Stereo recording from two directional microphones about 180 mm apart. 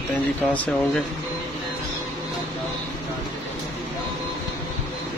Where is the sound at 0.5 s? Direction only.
5° left (ahead or behind).